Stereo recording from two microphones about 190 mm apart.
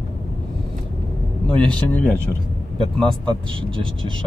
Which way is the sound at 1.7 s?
10° left (ahead or behind).